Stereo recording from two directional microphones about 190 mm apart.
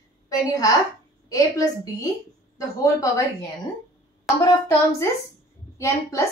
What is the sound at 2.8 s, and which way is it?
Speech, 20° left (ahead or behind).